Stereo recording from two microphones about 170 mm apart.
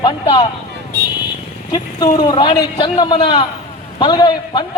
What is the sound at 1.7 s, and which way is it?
A woman's voice, 25° left (ahead or behind).